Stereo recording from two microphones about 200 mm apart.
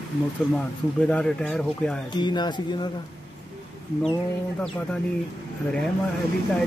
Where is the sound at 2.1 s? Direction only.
20° left (ahead or behind).